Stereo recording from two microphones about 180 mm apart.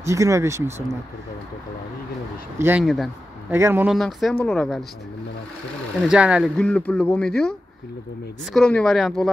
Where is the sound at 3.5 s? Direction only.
10° right (ahead or behind).